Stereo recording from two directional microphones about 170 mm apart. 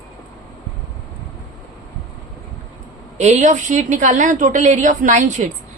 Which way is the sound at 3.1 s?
40° right (ahead or behind).